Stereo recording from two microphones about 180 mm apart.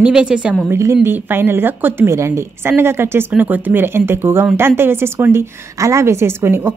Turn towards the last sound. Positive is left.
turn(degrees=-15)  # may be behind; listen again after turning